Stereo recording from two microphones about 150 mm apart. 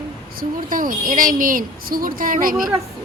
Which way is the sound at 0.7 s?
65° right (ahead or behind).